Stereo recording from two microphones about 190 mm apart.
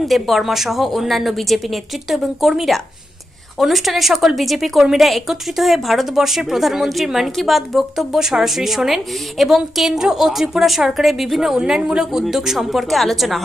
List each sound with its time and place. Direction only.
0.0 s a woman's voice: centre (ahead or behind)